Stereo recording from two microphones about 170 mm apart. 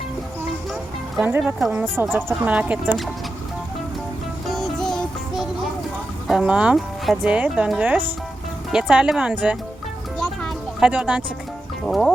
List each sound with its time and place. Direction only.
0.7 s music: centre (ahead or behind)
1.4 s speech: centre (ahead or behind)
4.4 s music: centre (ahead or behind)
6.2 s speech: 5° right (ahead or behind)
10.2 s music: centre (ahead or behind)
11.9 s speech: 5° left (ahead or behind)